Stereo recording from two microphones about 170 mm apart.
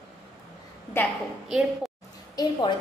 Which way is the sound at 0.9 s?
15° left (ahead or behind).